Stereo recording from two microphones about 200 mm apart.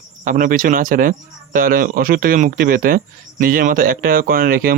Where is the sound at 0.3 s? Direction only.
40° right (ahead or behind).